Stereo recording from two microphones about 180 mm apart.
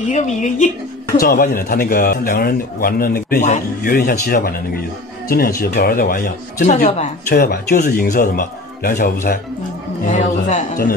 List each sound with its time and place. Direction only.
0.1 s speech: 40° left (ahead or behind)
1.2 s a man's voice: 55° left (ahead or behind)
7.2 s speech: 55° left (ahead or behind)